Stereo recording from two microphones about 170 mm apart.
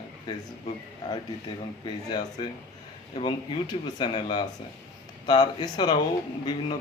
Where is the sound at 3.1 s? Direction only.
30° left (ahead or behind).